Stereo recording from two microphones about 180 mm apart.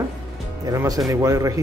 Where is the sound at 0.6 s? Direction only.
20° right (ahead or behind).